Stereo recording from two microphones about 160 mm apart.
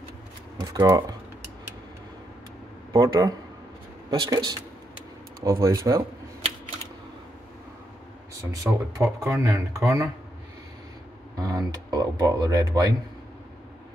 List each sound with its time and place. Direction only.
0.6 s speech: 25° right (ahead or behind)
2.9 s speech: 25° right (ahead or behind)
8.5 s speech: 20° right (ahead or behind)
11.3 s speech: 25° right (ahead or behind)